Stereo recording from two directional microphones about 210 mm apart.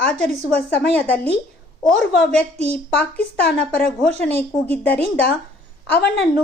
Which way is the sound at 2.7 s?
5° left (ahead or behind).